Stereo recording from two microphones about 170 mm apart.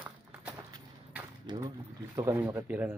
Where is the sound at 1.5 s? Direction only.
25° right (ahead or behind).